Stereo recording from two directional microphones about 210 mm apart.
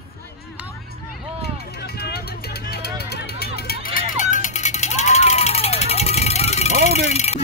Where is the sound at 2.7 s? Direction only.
50° left (ahead or behind).